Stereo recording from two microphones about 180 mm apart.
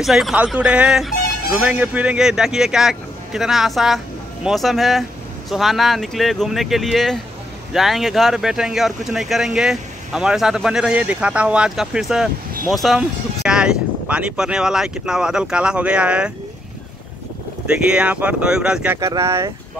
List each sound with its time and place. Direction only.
0.0 s speech: centre (ahead or behind)
17.6 s speech: 5° right (ahead or behind)
18.9 s speech: 15° right (ahead or behind)